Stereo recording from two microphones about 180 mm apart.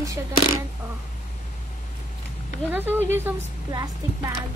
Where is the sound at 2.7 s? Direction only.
10° right (ahead or behind).